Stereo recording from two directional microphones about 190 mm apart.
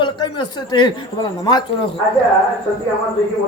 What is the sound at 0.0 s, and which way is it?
Speech, 25° left (ahead or behind).